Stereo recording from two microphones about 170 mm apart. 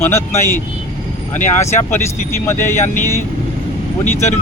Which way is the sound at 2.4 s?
15° left (ahead or behind).